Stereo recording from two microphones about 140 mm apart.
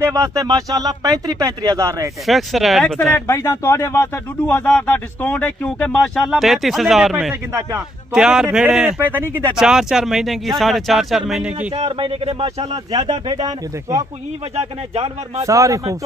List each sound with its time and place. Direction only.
0.0 s speech: 20° right (ahead or behind)
2.2 s speech: centre (ahead or behind)
3.2 s speech: 20° left (ahead or behind)
6.2 s speech: centre (ahead or behind)
9.6 s speech: 5° right (ahead or behind)
11.7 s speech: 40° right (ahead or behind)
12.9 s speech: 30° right (ahead or behind)
15.4 s speech: 25° right (ahead or behind)